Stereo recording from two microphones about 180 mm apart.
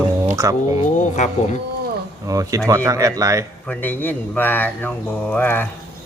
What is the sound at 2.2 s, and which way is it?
Speech, 20° right (ahead or behind).